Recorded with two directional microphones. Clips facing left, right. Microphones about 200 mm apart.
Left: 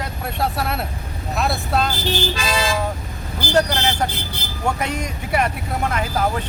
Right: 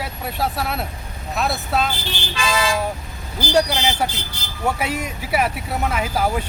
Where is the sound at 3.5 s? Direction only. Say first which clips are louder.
Even; 10° right (ahead or behind).